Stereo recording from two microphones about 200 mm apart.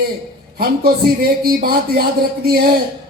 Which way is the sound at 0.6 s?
50° right (ahead or behind).